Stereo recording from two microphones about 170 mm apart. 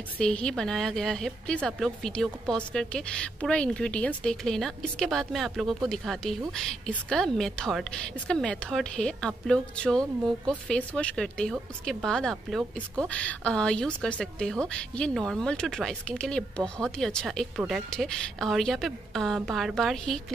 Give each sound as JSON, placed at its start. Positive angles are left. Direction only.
{"t": 0.2, "sound": "a woman's voice", "side_deg": 5}